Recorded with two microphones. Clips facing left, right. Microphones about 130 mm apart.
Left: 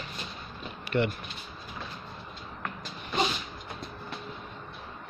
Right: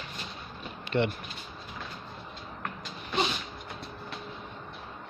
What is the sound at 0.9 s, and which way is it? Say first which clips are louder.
Speech: even; 15° right (ahead or behind).